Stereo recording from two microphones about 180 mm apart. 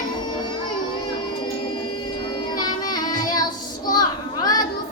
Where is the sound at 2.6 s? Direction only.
20° left (ahead or behind).